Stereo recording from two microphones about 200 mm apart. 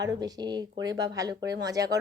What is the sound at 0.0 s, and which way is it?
Speech, 20° right (ahead or behind).